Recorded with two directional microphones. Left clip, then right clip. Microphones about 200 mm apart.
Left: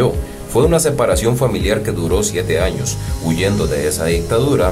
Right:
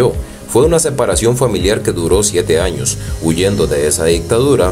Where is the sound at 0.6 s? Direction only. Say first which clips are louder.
Right 2 dB; 15° right (ahead or behind).